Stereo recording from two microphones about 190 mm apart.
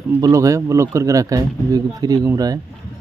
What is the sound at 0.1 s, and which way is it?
Speech, 15° right (ahead or behind).